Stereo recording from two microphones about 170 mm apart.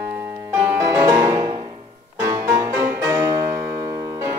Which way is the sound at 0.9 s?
20° right (ahead or behind).